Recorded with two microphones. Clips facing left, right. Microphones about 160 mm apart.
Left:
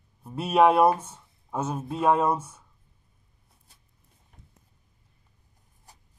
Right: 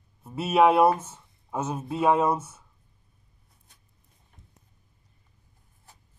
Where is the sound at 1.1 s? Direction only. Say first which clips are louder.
Even; 10° right (ahead or behind).